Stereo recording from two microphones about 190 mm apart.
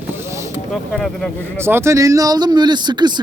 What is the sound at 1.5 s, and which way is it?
Speech, 15° right (ahead or behind).